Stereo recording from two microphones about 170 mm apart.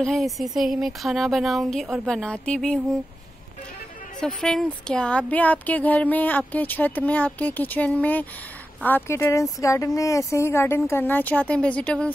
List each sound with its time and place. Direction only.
0.0 s speech: centre (ahead or behind)
4.4 s speech: centre (ahead or behind)